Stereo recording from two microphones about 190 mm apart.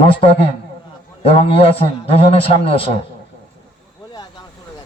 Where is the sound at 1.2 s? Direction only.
30° left (ahead or behind).